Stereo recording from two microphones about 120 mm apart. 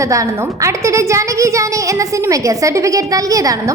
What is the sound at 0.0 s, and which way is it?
A woman's voice, 25° right (ahead or behind).